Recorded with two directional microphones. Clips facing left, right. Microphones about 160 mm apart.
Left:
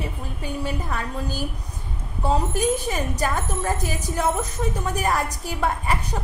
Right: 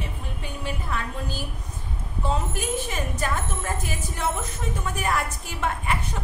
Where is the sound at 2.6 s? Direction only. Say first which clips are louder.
Left 5 dB; 40° left (ahead or behind).